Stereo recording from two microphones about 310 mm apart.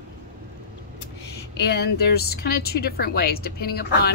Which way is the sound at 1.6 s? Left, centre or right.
Left.